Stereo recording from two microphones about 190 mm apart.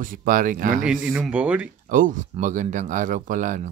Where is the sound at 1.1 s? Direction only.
5° right (ahead or behind).